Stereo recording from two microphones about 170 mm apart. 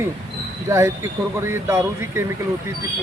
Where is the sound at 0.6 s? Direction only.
15° right (ahead or behind).